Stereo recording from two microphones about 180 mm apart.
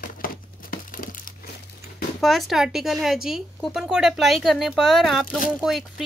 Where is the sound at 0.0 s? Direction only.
50° left (ahead or behind).